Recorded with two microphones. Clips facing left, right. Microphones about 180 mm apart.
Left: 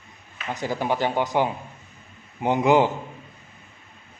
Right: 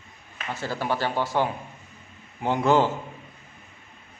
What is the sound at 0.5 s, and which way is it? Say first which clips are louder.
A man's voice: left 3 dB; 15° left (ahead or behind).